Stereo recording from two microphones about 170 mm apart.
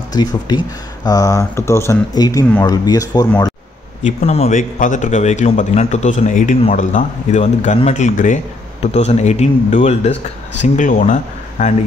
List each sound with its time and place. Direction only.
0.1 s speech: 25° left (ahead or behind)
4.0 s a man's voice: 40° left (ahead or behind)